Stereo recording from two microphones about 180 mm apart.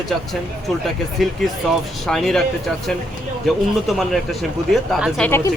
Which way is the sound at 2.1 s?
Centre (ahead or behind).